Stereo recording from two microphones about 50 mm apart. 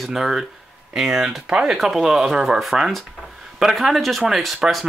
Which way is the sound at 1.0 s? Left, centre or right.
Centre.